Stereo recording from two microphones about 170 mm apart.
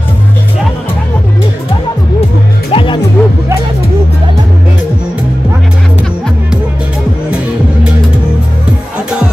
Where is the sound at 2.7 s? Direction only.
30° left (ahead or behind).